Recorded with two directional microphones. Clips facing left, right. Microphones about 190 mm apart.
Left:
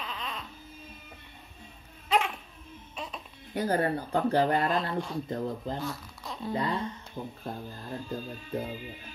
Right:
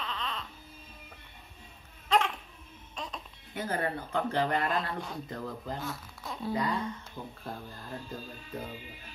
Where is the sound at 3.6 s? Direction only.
40° left (ahead or behind).